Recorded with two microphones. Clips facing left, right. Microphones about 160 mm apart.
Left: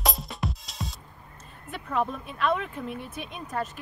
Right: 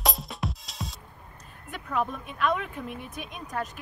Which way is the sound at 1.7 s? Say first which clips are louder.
Left 1 dB; centre (ahead or behind).